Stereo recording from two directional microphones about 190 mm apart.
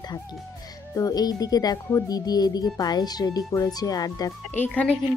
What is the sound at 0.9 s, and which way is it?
Speech, 20° left (ahead or behind).